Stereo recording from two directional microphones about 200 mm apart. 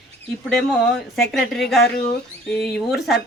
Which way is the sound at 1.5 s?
Centre (ahead or behind).